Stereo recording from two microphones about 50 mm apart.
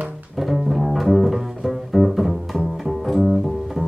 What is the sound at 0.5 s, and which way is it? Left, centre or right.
Double bass, centre.